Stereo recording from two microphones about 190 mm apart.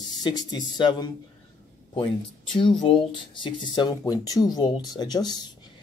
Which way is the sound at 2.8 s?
25° left (ahead or behind).